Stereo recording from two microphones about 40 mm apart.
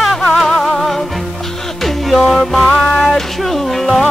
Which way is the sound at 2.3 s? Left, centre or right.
Centre.